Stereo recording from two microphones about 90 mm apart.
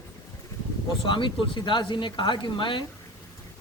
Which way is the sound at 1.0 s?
65° left (ahead or behind).